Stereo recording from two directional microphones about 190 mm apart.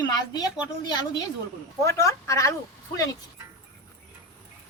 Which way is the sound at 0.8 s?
20° left (ahead or behind).